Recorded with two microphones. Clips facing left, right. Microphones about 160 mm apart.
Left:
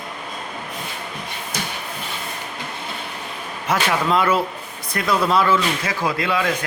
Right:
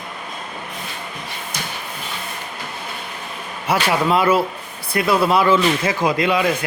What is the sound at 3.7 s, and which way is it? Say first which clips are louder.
Speech: right 2 dB; 10° right (ahead or behind).